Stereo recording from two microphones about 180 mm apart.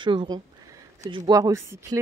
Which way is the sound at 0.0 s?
25° right (ahead or behind).